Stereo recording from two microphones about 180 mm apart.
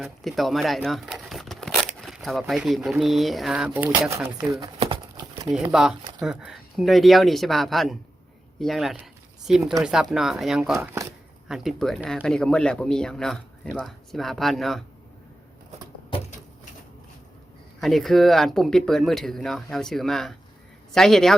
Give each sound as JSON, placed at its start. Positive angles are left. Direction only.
{"t": 0.0, "sound": "speech", "side_deg": 0}
{"t": 4.6, "sound": "crumpling", "side_deg": -25}
{"t": 5.5, "sound": "speech", "side_deg": -5}
{"t": 17.7, "sound": "speech", "side_deg": 0}